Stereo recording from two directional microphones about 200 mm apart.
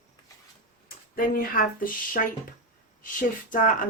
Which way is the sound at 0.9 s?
45° left (ahead or behind).